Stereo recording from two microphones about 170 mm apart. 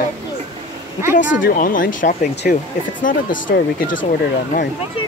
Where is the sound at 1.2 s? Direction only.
90° left.